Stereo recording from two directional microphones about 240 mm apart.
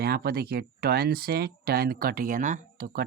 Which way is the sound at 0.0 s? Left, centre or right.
Right.